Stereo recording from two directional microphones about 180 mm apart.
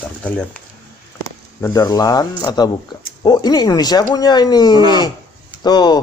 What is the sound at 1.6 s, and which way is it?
Speech, 20° left (ahead or behind).